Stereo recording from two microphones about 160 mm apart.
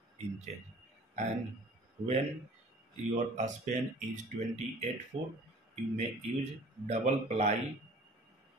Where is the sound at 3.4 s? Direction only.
45° right (ahead or behind).